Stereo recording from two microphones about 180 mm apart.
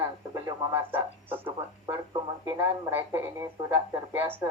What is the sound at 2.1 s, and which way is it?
Speech, 20° right (ahead or behind).